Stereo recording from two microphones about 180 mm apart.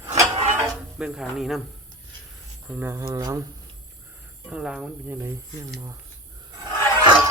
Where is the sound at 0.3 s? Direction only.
35° right (ahead or behind).